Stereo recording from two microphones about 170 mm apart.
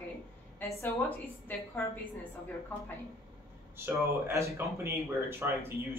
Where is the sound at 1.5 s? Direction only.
10° left (ahead or behind).